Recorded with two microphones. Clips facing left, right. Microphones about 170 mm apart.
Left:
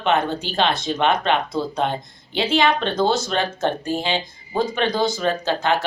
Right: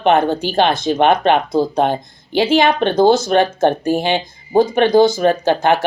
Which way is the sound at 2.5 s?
55° right (ahead or behind).